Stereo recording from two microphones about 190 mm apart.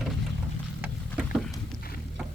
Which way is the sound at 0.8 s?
5° right (ahead or behind).